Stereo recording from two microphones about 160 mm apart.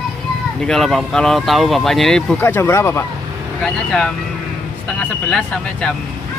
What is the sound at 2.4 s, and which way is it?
Speech, 15° left (ahead or behind).